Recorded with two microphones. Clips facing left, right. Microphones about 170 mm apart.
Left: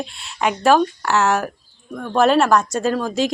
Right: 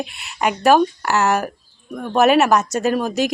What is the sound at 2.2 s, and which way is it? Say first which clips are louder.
Speech: right 1 dB; 5° right (ahead or behind).